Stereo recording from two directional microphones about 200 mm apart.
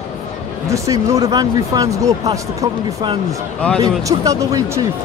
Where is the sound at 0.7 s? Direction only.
15° right (ahead or behind).